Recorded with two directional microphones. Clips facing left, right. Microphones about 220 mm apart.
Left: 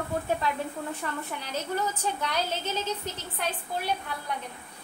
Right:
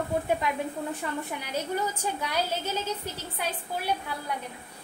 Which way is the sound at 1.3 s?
10° right (ahead or behind).